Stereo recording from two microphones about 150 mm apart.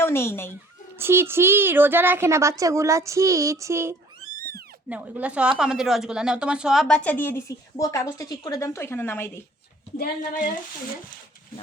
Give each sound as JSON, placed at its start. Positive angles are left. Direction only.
{"t": 0.0, "sound": "speech", "side_deg": 15}
{"t": 0.9, "sound": "a woman's voice", "side_deg": -15}
{"t": 10.0, "sound": "speech", "side_deg": 60}